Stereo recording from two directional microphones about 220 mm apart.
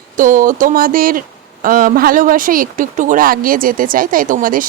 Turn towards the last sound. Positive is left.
turn(degrees=-40)  # may be behind; listen again after turning